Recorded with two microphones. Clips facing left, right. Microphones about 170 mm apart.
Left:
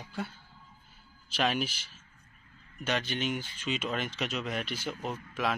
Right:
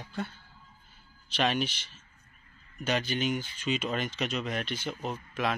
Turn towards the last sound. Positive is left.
turn(degrees=0)  # may be behind; listen again after turning